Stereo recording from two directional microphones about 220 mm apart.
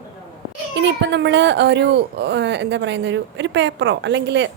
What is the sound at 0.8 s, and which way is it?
Speech, 55° right (ahead or behind).